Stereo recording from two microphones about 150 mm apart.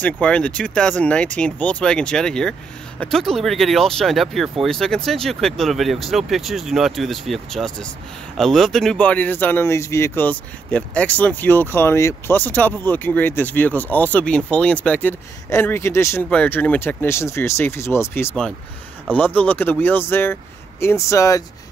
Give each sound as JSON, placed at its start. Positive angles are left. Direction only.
{"t": 0.0, "sound": "speech", "side_deg": 10}